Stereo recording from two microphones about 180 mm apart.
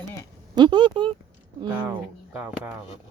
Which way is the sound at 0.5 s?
25° right (ahead or behind).